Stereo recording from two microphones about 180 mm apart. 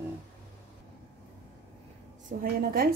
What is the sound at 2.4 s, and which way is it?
Speech, 55° right (ahead or behind).